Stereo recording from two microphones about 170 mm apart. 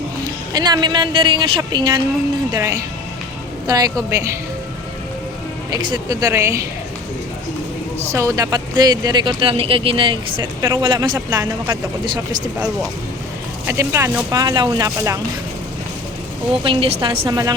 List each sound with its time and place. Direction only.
0.5 s speech: 25° right (ahead or behind)
5.7 s speech: 20° right (ahead or behind)
7.9 s speech: 15° right (ahead or behind)
10.6 s speech: 15° right (ahead or behind)
10.8 s speech: 25° right (ahead or behind)
16.6 s speech: 30° right (ahead or behind)